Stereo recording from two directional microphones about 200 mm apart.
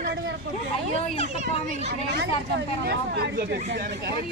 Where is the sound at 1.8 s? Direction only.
60° right (ahead or behind).